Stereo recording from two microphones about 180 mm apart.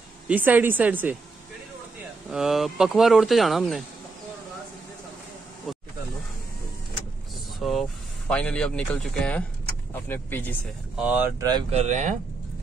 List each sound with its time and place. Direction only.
0.3 s a woman's voice: 10° right (ahead or behind)
2.3 s speech: centre (ahead or behind)
5.7 s snake: centre (ahead or behind)
7.5 s vehicle: centre (ahead or behind)
8.3 s speech: 5° left (ahead or behind)
11.0 s a woman's voice: 10° right (ahead or behind)
11.7 s speech: 40° right (ahead or behind)